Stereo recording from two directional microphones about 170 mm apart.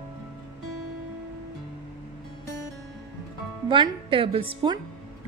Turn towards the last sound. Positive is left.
turn(degrees=-30)  # may be behind; listen again after turning